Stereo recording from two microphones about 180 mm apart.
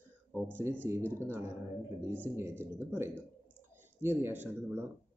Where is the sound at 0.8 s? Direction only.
15° right (ahead or behind).